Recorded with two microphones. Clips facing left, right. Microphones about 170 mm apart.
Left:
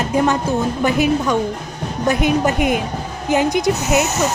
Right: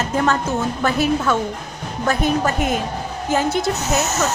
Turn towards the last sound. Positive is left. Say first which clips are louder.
# left 3 dB
turn(degrees=10)  # may be behind; listen again after turning